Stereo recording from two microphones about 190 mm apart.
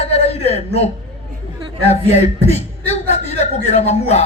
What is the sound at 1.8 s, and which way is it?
A woman's voice, 35° left (ahead or behind).